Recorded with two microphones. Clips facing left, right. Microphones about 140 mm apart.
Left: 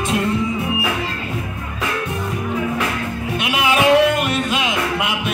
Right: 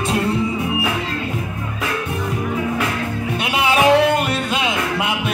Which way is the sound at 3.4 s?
35° right (ahead or behind).